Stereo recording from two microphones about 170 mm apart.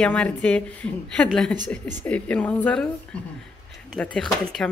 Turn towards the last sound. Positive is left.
turn(degrees=5)  # may be behind; listen again after turning